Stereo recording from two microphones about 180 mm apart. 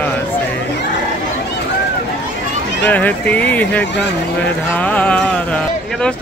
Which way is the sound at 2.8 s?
10° left (ahead or behind).